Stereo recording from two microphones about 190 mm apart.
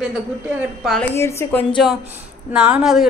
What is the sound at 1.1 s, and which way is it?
Speech, 15° left (ahead or behind).